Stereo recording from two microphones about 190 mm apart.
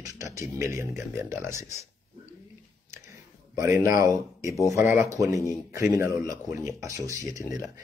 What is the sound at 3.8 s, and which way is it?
Speech, 20° right (ahead or behind).